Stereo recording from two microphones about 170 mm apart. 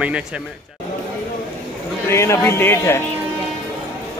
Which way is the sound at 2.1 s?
15° left (ahead or behind).